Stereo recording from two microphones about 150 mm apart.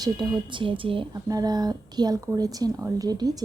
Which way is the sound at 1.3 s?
25° right (ahead or behind).